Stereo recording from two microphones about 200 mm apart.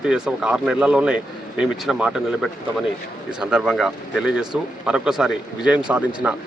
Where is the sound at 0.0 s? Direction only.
5° right (ahead or behind).